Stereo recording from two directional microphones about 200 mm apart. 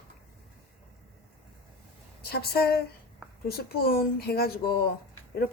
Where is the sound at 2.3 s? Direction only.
50° left (ahead or behind).